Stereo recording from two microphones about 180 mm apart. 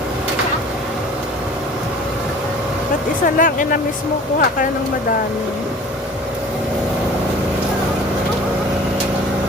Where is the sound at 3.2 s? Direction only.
50° left (ahead or behind).